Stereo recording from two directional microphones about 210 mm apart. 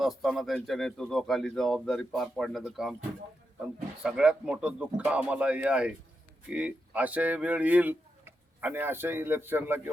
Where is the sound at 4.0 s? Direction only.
5° right (ahead or behind).